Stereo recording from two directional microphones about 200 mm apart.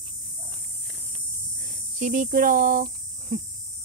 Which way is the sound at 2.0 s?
40° right (ahead or behind).